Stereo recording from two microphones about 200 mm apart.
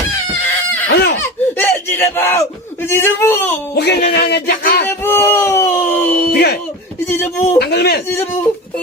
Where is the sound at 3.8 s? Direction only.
55° left (ahead or behind).